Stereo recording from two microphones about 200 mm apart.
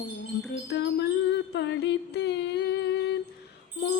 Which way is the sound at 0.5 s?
60° left (ahead or behind).